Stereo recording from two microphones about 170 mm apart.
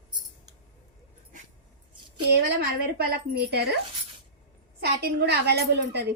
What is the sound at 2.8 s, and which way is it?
Speech, 65° right (ahead or behind).